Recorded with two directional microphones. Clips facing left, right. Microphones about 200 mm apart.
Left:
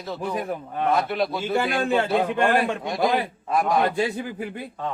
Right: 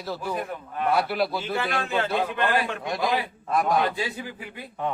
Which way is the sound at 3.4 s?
Centre (ahead or behind).